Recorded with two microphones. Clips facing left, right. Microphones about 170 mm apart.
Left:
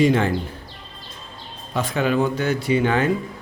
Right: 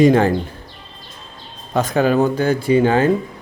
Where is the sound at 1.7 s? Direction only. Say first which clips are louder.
Right 5 dB; 40° right (ahead or behind).